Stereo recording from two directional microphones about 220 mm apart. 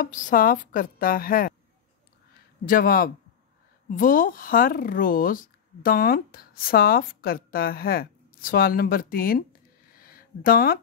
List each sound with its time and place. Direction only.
0.0 s a woman's voice: 35° left (ahead or behind)
2.6 s a woman's voice: 40° left (ahead or behind)